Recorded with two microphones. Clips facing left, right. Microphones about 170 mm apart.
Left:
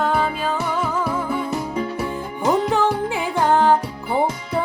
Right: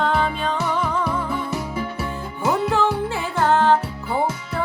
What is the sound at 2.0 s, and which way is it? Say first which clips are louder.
Music: left 2 dB; 15° left (ahead or behind).